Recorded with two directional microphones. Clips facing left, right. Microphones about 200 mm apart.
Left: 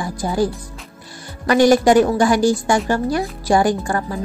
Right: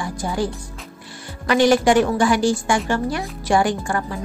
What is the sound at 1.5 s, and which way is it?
A woman's voice, 40° left (ahead or behind).